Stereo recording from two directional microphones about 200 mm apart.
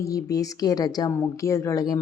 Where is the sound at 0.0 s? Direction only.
15° left (ahead or behind).